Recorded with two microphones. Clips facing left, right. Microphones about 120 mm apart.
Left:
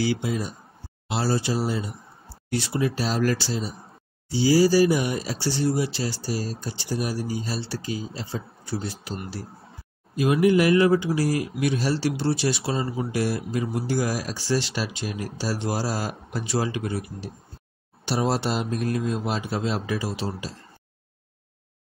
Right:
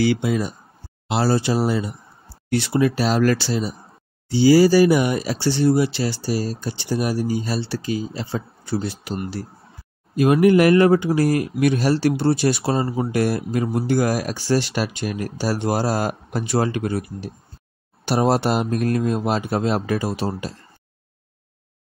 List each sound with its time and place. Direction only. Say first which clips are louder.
0.0 s speech: right 6 dB; 65° right (ahead or behind)
10.1 s speech: right 5 dB; 55° right (ahead or behind)